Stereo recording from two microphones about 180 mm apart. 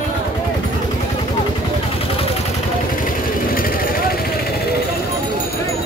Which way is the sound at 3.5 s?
55° left (ahead or behind).